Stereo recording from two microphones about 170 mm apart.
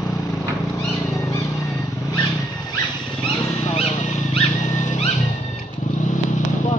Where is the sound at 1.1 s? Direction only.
20° left (ahead or behind).